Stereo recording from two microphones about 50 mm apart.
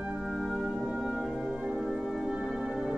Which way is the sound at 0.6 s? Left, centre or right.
Centre.